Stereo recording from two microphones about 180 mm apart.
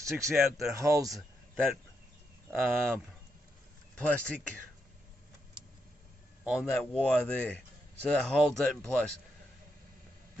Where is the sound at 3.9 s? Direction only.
5° left (ahead or behind).